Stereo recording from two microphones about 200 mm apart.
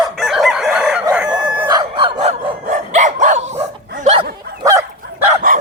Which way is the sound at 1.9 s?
30° right (ahead or behind).